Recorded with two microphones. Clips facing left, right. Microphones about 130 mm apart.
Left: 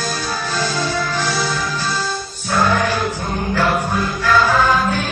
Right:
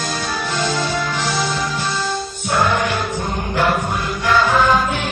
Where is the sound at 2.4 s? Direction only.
20° right (ahead or behind).